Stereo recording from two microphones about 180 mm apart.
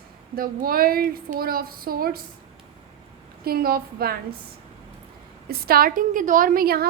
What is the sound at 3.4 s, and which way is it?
Speech, 55° right (ahead or behind).